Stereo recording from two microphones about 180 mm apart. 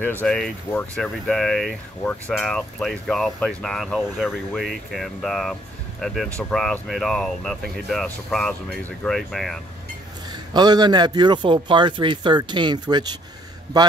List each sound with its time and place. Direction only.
0.0 s speech: 10° left (ahead or behind)
10.5 s speech: 25° right (ahead or behind)